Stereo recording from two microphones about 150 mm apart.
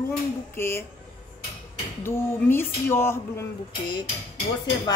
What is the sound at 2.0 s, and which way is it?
Speech, 15° left (ahead or behind).